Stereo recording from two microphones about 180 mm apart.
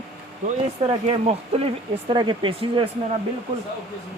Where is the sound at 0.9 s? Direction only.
30° right (ahead or behind).